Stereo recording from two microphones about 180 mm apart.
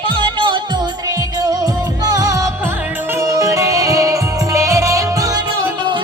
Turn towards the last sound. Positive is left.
turn(degrees=-20)  # may be behind; listen again after turning